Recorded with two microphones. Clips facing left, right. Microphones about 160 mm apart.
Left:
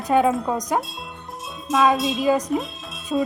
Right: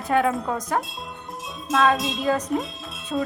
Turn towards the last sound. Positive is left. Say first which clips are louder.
# left 3 dB
turn(degrees=10)  # may be behind; listen again after turning